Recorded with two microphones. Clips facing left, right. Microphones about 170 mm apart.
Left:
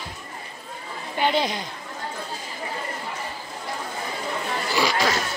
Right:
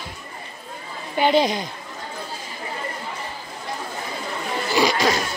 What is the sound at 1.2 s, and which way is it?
Speech, 15° right (ahead or behind).